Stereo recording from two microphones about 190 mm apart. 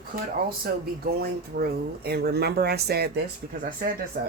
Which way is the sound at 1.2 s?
55° right (ahead or behind).